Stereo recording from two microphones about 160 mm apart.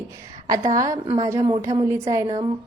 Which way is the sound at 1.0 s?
25° right (ahead or behind).